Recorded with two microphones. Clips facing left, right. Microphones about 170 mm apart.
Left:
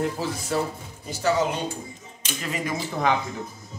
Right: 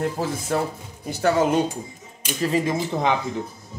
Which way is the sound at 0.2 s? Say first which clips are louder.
Right 3 dB; 50° right (ahead or behind).